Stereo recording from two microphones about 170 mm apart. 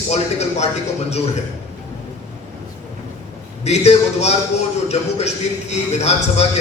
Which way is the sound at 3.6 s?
40° left (ahead or behind).